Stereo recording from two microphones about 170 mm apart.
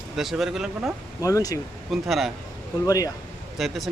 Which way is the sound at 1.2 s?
20° left (ahead or behind).